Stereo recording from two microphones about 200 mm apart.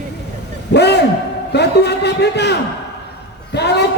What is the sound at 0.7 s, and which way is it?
Speech, 55° left (ahead or behind).